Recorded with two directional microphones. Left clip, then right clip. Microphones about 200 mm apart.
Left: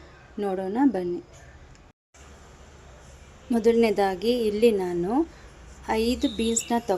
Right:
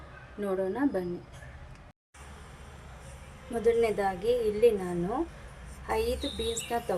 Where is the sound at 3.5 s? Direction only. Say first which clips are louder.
Left 5 dB; 45° left (ahead or behind).